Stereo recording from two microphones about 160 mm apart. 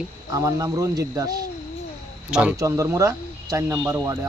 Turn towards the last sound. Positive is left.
turn(degrees=-15)  # may be behind; listen again after turning